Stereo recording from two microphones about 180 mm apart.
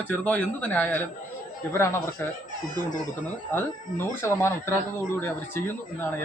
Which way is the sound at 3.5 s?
15° left (ahead or behind).